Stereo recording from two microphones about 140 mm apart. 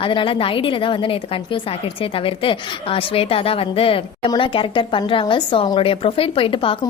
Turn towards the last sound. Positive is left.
turn(degrees=40)  # may be behind; listen again after turning